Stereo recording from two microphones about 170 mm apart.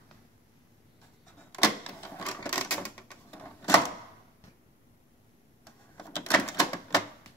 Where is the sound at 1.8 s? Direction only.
10° left (ahead or behind).